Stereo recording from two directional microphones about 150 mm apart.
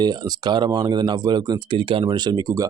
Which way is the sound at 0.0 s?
30° right (ahead or behind).